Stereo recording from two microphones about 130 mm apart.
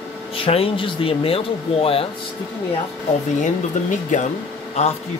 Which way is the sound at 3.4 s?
75° left (ahead or behind).